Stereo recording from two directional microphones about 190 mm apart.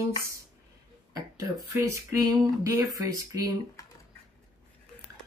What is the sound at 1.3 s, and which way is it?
Speech, 15° right (ahead or behind).